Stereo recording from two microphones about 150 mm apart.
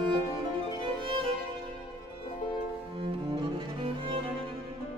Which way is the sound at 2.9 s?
35° right (ahead or behind).